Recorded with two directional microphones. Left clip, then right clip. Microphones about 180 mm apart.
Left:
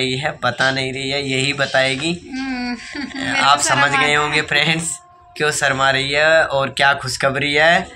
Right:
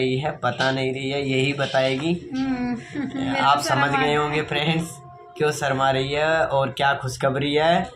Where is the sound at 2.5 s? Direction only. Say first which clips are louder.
Left 3 dB; 25° right (ahead or behind).